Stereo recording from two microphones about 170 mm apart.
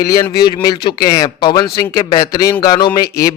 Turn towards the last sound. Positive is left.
turn(degrees=20)  # may be behind; listen again after turning